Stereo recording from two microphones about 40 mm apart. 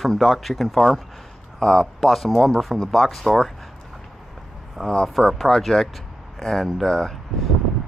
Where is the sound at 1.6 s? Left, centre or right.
Centre.